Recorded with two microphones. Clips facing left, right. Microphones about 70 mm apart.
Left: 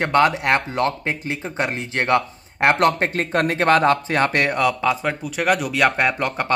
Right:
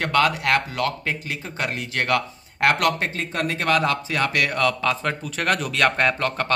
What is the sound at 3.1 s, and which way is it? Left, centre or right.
Speech, left.